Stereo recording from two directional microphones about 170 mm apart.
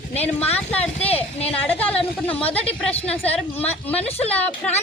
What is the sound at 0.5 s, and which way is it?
Speech, 10° left (ahead or behind).